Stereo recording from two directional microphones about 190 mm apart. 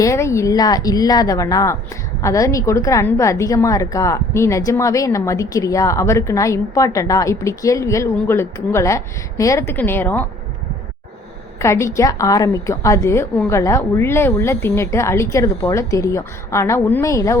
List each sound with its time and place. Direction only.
0.0 s a woman's voice: 15° left (ahead or behind)
11.6 s a woman's voice: 15° left (ahead or behind)